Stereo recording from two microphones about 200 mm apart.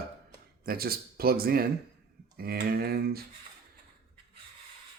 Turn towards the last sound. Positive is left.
turn(degrees=-50)  # may be behind; listen again after turning